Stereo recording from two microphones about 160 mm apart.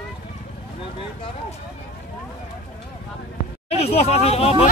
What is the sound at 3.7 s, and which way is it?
Speech, 40° left (ahead or behind).